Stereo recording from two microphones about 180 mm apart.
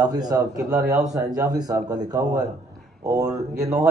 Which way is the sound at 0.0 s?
20° right (ahead or behind).